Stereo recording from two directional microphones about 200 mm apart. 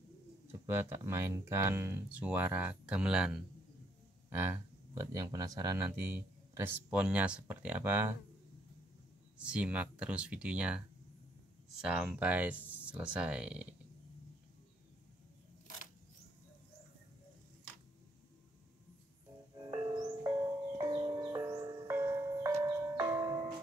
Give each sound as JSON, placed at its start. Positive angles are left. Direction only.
{"t": 0.5, "sound": "speech", "side_deg": -10}
{"t": 9.4, "sound": "speech", "side_deg": -5}
{"t": 11.8, "sound": "speech", "side_deg": -5}
{"t": 19.8, "sound": "music", "side_deg": -15}